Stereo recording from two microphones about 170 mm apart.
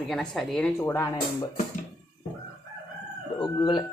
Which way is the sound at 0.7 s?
20° left (ahead or behind).